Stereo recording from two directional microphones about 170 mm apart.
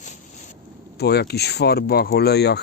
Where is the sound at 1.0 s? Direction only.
70° left (ahead or behind).